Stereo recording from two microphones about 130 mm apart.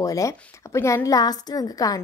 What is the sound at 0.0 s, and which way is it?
A woman's voice, 25° left (ahead or behind).